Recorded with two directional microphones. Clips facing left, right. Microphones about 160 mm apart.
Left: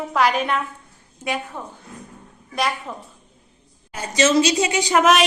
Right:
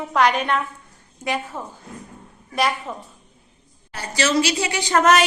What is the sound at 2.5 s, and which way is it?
Speech, centre (ahead or behind).